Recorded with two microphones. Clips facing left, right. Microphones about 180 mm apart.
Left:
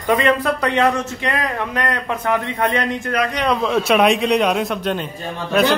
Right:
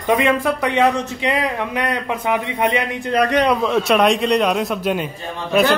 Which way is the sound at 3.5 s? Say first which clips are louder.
Even; centre (ahead or behind).